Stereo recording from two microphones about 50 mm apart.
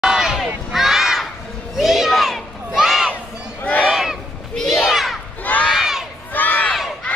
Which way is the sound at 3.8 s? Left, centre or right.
Centre.